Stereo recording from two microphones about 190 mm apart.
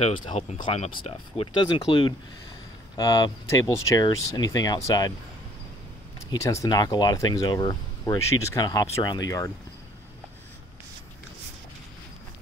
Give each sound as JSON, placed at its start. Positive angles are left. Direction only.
{"t": 0.0, "sound": "speech", "side_deg": 25}
{"t": 6.3, "sound": "speech", "side_deg": 15}